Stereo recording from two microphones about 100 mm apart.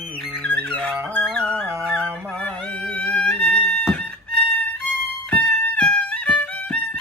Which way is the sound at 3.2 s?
15° left (ahead or behind).